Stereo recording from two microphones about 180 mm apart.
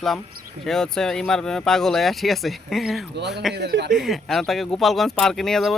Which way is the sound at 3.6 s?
70° right (ahead or behind).